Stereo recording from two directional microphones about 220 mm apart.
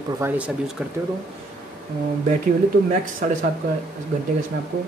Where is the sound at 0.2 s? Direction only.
5° right (ahead or behind).